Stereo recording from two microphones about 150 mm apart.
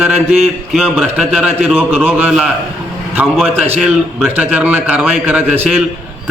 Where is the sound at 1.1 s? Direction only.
5° right (ahead or behind).